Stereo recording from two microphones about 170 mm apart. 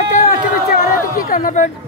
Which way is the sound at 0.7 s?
55° left (ahead or behind).